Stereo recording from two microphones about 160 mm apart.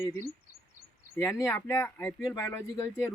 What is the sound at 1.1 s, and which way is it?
Speech, 20° left (ahead or behind).